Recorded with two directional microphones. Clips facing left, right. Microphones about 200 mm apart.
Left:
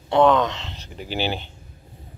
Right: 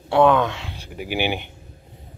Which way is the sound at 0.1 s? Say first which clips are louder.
Right 1 dB; 10° right (ahead or behind).